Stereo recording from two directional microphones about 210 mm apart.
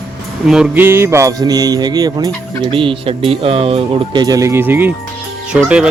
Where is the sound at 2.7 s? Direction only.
25° right (ahead or behind).